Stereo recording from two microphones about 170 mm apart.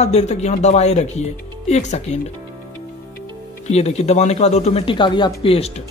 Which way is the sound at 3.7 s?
40° left (ahead or behind).